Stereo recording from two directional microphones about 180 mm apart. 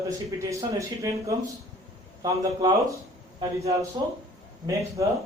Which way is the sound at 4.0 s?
25° right (ahead or behind).